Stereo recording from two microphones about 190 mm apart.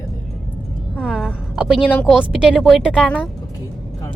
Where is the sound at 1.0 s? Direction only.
Centre (ahead or behind).